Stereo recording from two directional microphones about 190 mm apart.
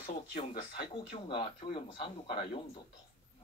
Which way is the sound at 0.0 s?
45° left (ahead or behind).